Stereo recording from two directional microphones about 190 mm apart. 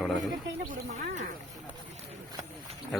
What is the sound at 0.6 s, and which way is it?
Speech, 40° right (ahead or behind).